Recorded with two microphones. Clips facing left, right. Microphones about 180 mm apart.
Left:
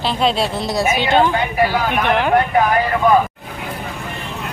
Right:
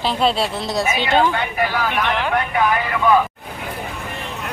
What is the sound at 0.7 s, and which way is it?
Speech, 5° left (ahead or behind).